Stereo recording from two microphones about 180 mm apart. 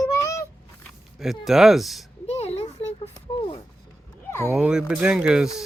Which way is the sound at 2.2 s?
35° left (ahead or behind).